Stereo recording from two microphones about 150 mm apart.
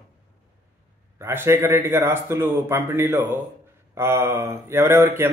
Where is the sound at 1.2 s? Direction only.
15° right (ahead or behind).